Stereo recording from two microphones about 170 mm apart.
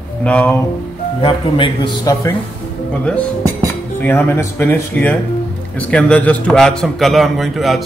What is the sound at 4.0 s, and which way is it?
A man's voice, 10° left (ahead or behind).